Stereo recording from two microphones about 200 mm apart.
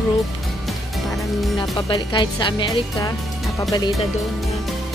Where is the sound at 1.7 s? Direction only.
25° left (ahead or behind).